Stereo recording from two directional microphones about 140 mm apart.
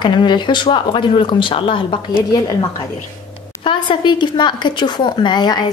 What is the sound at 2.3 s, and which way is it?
A woman's voice, 30° left (ahead or behind).